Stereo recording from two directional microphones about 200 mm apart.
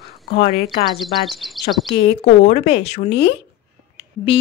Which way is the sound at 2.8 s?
60° left (ahead or behind).